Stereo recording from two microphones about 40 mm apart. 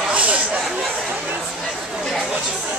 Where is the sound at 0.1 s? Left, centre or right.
Right.